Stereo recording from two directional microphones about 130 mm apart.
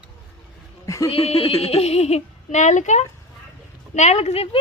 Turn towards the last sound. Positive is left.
turn(degrees=50)  # may be behind; listen again after turning